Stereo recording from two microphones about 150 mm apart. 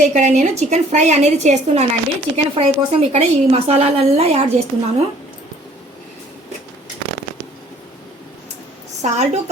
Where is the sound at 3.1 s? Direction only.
45° right (ahead or behind).